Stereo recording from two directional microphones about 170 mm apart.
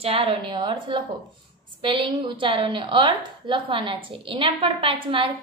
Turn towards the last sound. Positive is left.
turn(degrees=-30)  # may be behind; listen again after turning